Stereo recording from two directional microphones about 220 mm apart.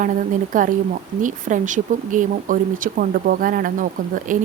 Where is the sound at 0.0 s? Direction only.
35° right (ahead or behind).